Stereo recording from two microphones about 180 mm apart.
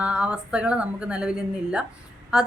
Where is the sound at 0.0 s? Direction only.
5° right (ahead or behind).